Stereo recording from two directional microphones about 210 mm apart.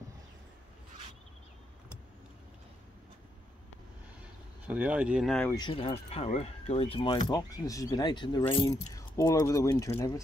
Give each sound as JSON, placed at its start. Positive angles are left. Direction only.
{"t": 4.6, "sound": "speech", "side_deg": -5}
{"t": 5.5, "sound": "speech", "side_deg": 20}